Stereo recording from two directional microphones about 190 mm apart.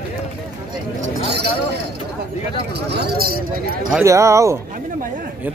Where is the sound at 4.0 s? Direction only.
15° right (ahead or behind).